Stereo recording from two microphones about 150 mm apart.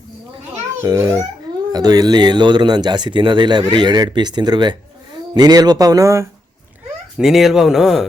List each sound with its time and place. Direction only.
0.8 s speech: 20° right (ahead or behind)
7.2 s speech: centre (ahead or behind)